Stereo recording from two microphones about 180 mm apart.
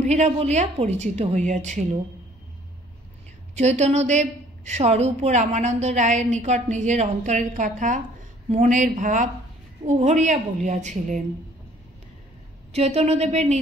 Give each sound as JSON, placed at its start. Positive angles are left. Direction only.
{"t": 0.0, "sound": "a woman's voice", "side_deg": -40}
{"t": 3.5, "sound": "a woman's voice", "side_deg": -40}
{"t": 12.7, "sound": "a woman's voice", "side_deg": -35}